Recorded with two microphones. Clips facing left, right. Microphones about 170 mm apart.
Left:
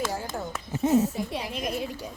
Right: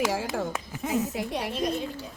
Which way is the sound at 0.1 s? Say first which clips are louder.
Right 4 dB; 90° right.